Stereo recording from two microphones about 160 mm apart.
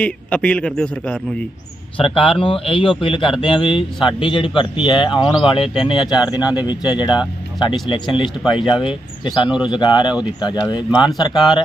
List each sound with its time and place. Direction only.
0.0 s a man's voice: 5° left (ahead or behind)
2.0 s speech: 35° left (ahead or behind)